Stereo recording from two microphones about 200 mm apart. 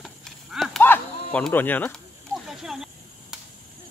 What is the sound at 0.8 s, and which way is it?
Speech, 10° left (ahead or behind).